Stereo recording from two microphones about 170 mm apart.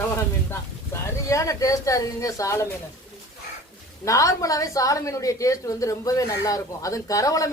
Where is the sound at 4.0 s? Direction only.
20° left (ahead or behind).